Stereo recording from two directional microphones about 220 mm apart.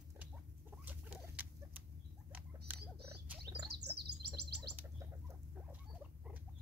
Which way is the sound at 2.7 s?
10° right (ahead or behind).